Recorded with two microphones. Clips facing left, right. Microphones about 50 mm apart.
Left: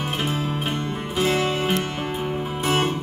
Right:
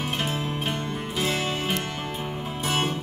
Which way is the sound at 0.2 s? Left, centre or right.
Centre.